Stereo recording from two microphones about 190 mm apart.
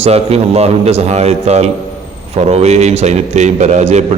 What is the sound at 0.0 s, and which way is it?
A man's voice, 35° right (ahead or behind).